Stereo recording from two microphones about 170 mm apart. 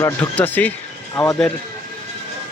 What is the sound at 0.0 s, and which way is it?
A man's voice, 10° left (ahead or behind).